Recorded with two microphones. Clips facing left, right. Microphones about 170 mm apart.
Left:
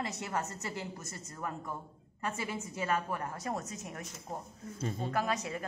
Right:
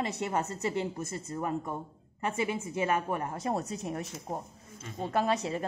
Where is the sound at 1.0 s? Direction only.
55° right (ahead or behind).